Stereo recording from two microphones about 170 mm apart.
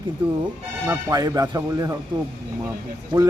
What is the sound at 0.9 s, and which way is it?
Speech, 20° right (ahead or behind).